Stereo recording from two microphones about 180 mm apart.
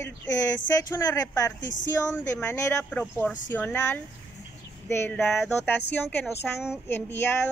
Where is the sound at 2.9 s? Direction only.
10° left (ahead or behind).